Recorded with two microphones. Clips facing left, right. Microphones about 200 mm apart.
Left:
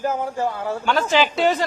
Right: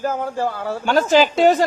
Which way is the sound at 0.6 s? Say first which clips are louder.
Right 6 dB; 40° right (ahead or behind).